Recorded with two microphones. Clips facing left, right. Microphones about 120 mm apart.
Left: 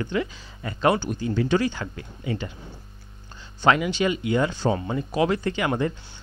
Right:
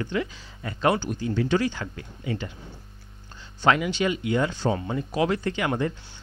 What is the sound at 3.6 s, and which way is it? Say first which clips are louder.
Speech: left 1 dB; 15° left (ahead or behind).